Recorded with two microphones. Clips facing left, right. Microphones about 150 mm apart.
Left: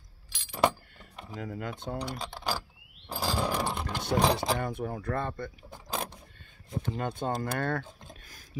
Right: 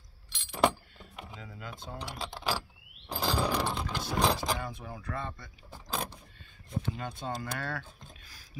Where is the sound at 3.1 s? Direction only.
5° left (ahead or behind).